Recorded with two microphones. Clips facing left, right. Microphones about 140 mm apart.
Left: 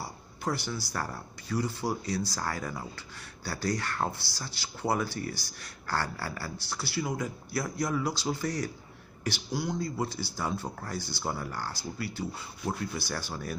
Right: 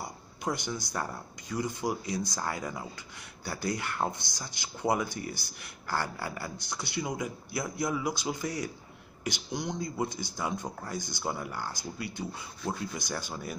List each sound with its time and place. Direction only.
0.4 s speech: 15° right (ahead or behind)